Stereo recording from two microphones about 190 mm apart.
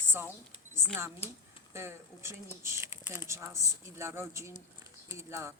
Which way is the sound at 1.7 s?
15° right (ahead or behind).